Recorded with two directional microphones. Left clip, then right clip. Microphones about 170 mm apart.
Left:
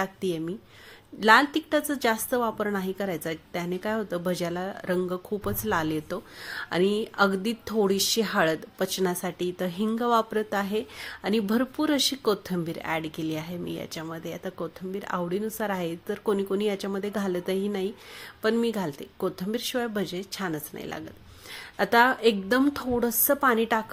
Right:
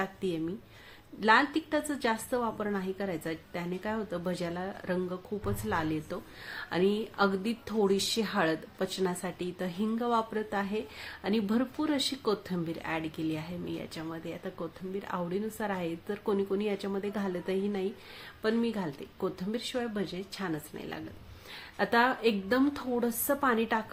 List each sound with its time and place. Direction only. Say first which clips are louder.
0.0 s a woman's voice: left 4 dB; 30° left (ahead or behind)